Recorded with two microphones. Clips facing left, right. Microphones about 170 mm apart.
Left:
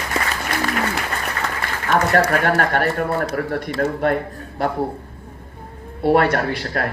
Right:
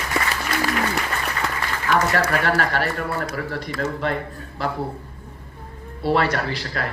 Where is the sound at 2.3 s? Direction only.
50° left (ahead or behind).